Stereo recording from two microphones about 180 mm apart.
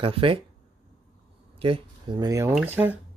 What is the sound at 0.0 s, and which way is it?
Speech, 30° right (ahead or behind).